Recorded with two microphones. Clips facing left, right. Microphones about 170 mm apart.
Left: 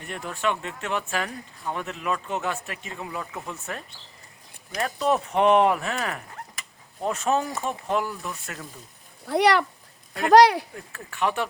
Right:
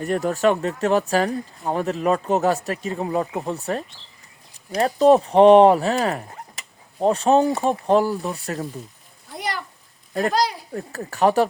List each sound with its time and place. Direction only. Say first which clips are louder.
0.0 s speech: right 9 dB; 40° right (ahead or behind)
9.2 s speech: left 10 dB; 70° left (ahead or behind)
10.8 s speech: right 7 dB; 40° right (ahead or behind)